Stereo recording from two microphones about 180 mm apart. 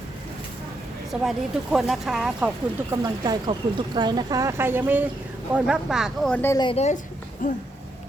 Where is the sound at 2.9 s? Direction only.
25° right (ahead or behind); by 6.6 s 10° left (ahead or behind).